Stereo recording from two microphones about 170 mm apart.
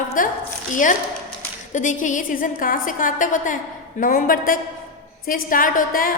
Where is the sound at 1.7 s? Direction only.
45° left (ahead or behind).